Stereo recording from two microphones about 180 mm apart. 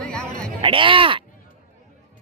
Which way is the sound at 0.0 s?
5° left (ahead or behind).